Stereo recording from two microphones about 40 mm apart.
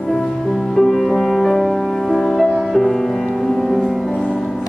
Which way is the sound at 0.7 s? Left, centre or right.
Centre.